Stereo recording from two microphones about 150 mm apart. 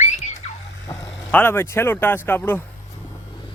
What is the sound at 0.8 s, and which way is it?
Speech, 20° left (ahead or behind).